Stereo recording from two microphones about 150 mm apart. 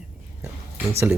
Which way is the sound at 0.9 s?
15° right (ahead or behind).